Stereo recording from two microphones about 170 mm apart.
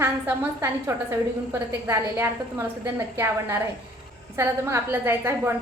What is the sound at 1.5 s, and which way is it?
A woman's voice, 15° right (ahead or behind).